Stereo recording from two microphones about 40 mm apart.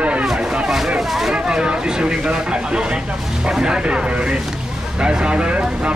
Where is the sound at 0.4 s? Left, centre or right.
Right.